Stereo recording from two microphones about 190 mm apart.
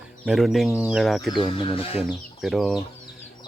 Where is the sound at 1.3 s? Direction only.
25° left (ahead or behind).